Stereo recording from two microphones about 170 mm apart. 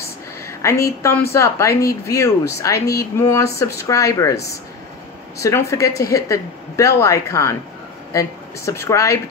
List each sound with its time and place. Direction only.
0.0 s a sound: 15° left (ahead or behind)
1.3 s speech: 20° left (ahead or behind)
5.4 s speech: 20° left (ahead or behind)